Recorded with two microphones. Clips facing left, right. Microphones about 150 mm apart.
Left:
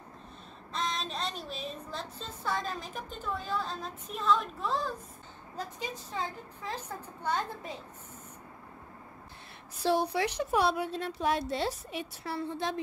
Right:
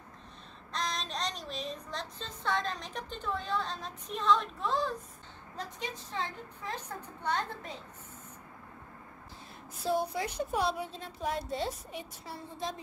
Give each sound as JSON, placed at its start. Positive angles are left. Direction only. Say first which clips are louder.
{"t": 0.7, "sound": "speech", "louder": "left 1 dB", "side_deg": 0}
{"t": 7.2, "sound": "a woman's voice", "louder": "left 1 dB", "side_deg": 10}
{"t": 9.8, "sound": "speech", "louder": "left 3 dB", "side_deg": 80}